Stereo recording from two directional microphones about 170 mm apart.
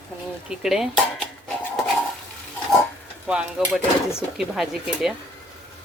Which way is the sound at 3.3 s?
5° right (ahead or behind).